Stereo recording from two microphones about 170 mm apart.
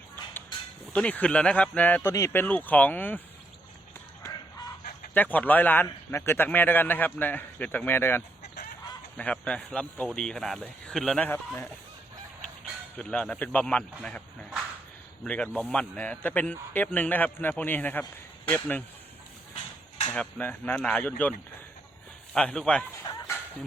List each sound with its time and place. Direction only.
0.9 s a man's voice: 5° left (ahead or behind)
4.2 s chicken: 20° left (ahead or behind)
5.1 s a man's voice: 10° left (ahead or behind)
13.0 s a man's voice: 5° left (ahead or behind)
15.2 s a man's voice: 5° left (ahead or behind)
20.1 s a man's voice: 10° left (ahead or behind)
22.4 s speech: 5° left (ahead or behind)